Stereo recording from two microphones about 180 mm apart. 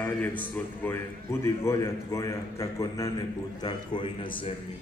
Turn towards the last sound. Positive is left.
turn(degrees=25)  # may be behind; listen again after turning